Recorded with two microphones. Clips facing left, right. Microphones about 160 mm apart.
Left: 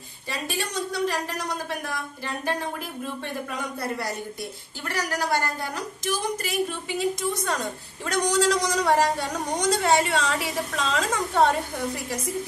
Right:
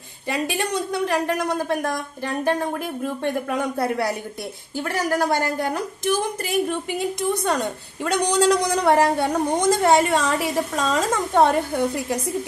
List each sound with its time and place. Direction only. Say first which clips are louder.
0.3 s a woman's voice: right 7 dB; 60° right (ahead or behind)
11.7 s a woman's voice: right 7 dB; 65° right (ahead or behind)